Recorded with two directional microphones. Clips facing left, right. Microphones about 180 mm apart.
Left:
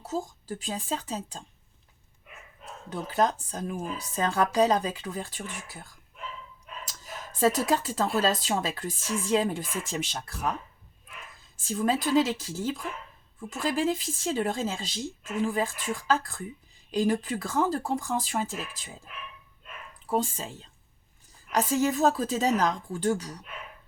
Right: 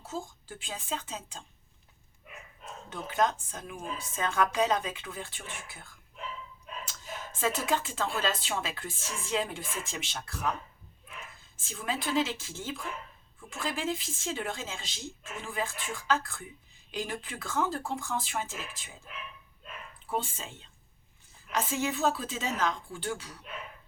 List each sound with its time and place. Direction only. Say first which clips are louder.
0.0 s speech: left 6 dB; 40° left (ahead or behind)
2.9 s speech: left 3 dB; 35° left (ahead or behind)
11.5 s speech: left 9 dB; 40° left (ahead or behind)
20.1 s speech: left 6 dB; 40° left (ahead or behind)